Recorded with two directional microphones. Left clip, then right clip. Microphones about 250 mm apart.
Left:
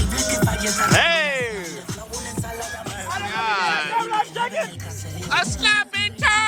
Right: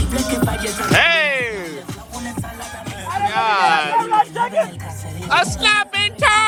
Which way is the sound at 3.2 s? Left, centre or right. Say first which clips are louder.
Right 7 dB; centre.